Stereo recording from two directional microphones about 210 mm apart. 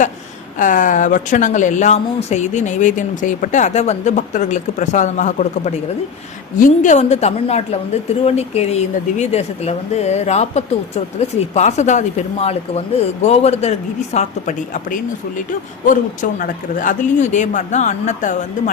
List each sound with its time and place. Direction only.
0.6 s speech: 40° left (ahead or behind)
16.4 s speech: 40° left (ahead or behind)